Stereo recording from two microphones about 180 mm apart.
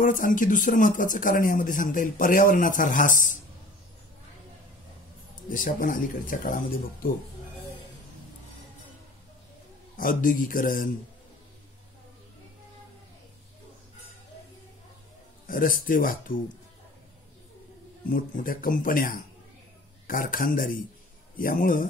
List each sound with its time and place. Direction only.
0.0 s speech: 50° left (ahead or behind)
5.5 s speech: 50° left (ahead or behind)
9.9 s speech: 50° left (ahead or behind)
15.4 s speech: 50° left (ahead or behind)
18.1 s speech: 50° left (ahead or behind)